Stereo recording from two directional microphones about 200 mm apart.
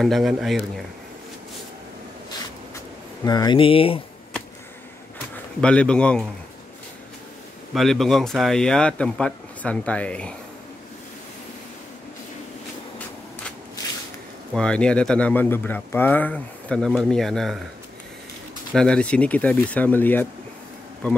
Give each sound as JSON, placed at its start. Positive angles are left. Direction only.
{"t": 0.0, "sound": "speech", "side_deg": 0}
{"t": 3.3, "sound": "speech", "side_deg": 20}
{"t": 5.6, "sound": "speech", "side_deg": 5}
{"t": 7.7, "sound": "speech", "side_deg": 0}
{"t": 14.5, "sound": "speech", "side_deg": 5}
{"t": 18.7, "sound": "speech", "side_deg": 5}